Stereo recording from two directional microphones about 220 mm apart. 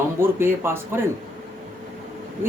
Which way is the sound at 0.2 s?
10° right (ahead or behind).